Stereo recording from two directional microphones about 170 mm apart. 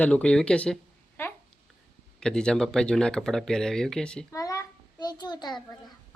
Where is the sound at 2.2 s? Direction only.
5° left (ahead or behind).